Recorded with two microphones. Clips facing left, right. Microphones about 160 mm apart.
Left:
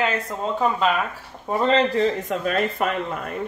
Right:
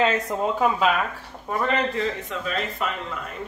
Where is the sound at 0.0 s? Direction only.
20° right (ahead or behind).